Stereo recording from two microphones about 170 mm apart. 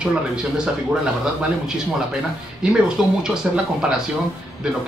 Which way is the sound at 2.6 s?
5° right (ahead or behind).